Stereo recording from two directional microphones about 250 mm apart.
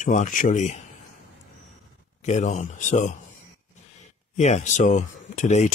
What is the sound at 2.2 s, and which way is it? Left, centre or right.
Speech, left.